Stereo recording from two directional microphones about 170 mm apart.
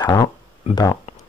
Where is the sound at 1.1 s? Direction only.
40° left (ahead or behind).